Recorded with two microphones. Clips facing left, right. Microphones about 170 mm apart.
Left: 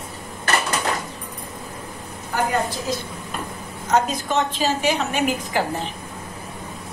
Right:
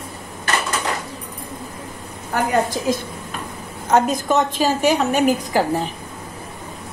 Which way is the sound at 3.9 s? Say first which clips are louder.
Right 4 dB; 50° right (ahead or behind).